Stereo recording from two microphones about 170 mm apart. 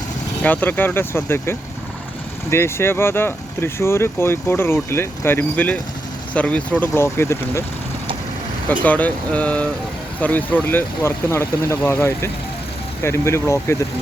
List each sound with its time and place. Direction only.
0.4 s speech: 10° left (ahead or behind)
8.8 s speech: 10° left (ahead or behind)